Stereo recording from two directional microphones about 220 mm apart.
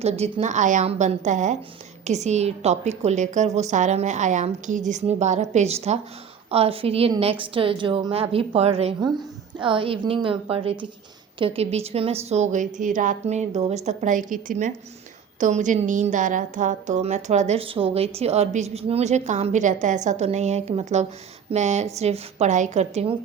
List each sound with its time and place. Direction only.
0.0 s a woman's voice: 30° right (ahead or behind)